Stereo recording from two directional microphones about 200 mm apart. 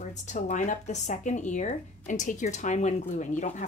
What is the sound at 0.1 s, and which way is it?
Speech, 35° left (ahead or behind).